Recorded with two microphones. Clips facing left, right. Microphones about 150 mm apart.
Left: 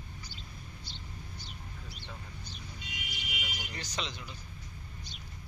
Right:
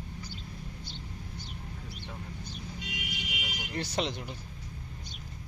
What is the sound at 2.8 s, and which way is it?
Car alarm, 85° right.